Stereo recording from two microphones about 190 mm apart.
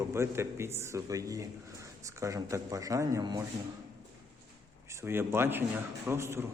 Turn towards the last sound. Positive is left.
turn(degrees=-15)  # may be behind; listen again after turning